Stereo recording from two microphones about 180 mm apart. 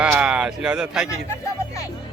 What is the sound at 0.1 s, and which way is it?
Speech, 5° right (ahead or behind).